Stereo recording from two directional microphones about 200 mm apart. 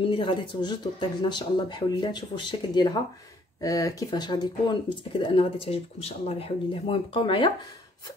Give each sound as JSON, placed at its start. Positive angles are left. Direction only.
{"t": 0.0, "sound": "speech", "side_deg": 25}